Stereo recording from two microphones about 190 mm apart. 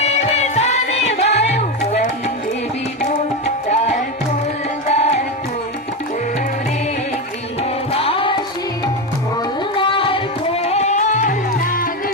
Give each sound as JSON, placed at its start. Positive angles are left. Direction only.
{"t": 0.0, "sound": "music", "side_deg": 35}
{"t": 3.1, "sound": "tabla", "side_deg": 35}
{"t": 4.9, "sound": "music", "side_deg": 35}
{"t": 7.9, "sound": "music", "side_deg": 30}
{"t": 9.7, "sound": "music", "side_deg": 25}